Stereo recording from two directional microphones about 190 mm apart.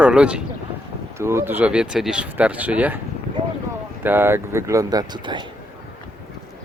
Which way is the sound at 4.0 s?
10° right (ahead or behind).